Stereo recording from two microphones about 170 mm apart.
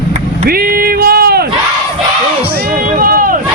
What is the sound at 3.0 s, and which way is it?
Run, 55° right (ahead or behind).